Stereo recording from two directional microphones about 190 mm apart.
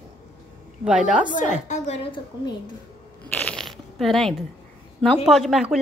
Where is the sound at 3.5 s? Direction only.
Centre (ahead or behind).